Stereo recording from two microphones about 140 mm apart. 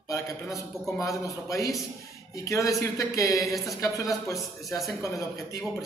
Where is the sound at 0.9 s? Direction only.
25° left (ahead or behind).